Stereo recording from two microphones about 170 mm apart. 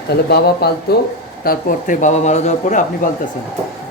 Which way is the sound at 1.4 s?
55° left (ahead or behind).